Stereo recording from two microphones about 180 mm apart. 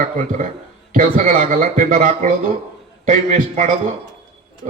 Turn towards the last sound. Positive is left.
turn(degrees=-45)  # may be behind; listen again after turning